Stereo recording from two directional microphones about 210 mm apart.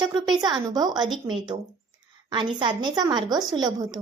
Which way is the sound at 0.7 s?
20° right (ahead or behind).